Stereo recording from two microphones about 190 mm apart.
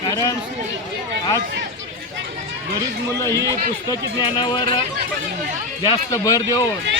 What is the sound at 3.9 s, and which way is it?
Speech, 20° left (ahead or behind).